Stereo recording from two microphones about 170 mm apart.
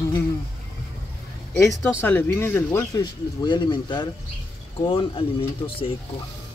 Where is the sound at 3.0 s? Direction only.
25° left (ahead or behind).